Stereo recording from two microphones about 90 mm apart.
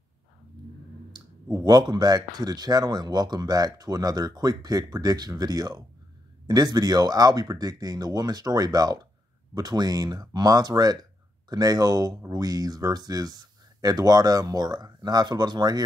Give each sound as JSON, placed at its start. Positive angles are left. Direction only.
{"t": 1.1, "sound": "a man's voice", "side_deg": -50}